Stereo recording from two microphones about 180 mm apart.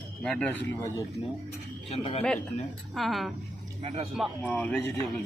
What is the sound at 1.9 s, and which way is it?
Speech, 35° left (ahead or behind).